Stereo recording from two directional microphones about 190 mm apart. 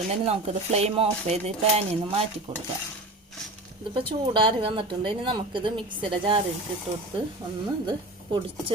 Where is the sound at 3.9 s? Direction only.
25° right (ahead or behind).